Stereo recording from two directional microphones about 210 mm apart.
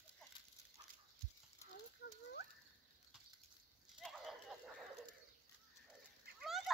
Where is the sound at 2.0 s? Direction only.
50° left (ahead or behind).